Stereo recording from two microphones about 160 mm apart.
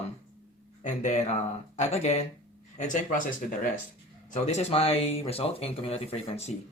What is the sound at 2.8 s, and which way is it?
Speech, 55° left (ahead or behind).